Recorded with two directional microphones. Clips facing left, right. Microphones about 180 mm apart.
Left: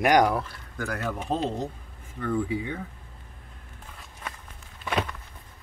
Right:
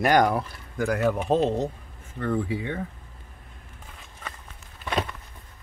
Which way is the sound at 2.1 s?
65° right (ahead or behind).